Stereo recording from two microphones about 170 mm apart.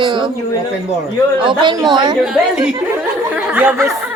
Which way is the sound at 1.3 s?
30° right (ahead or behind).